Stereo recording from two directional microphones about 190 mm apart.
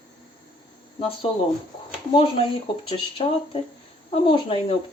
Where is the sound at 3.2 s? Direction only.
30° left (ahead or behind).